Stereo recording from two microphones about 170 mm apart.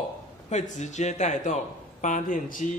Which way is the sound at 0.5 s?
45° left (ahead or behind).